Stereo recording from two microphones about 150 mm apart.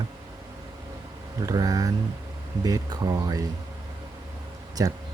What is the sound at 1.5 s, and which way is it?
Speech, 25° right (ahead or behind).